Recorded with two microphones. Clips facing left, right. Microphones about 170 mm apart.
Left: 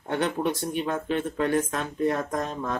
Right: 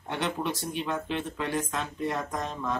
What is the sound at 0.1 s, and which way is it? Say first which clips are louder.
Speech: left 5 dB; 50° left (ahead or behind).